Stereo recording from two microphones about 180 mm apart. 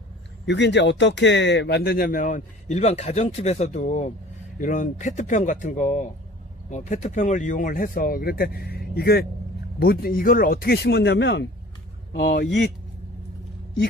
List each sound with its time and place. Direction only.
0.5 s speech: 75° left (ahead or behind)
12.1 s speech: 75° left (ahead or behind)